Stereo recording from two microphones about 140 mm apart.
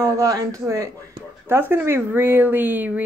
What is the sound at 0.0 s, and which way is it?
A woman's voice, 25° right (ahead or behind).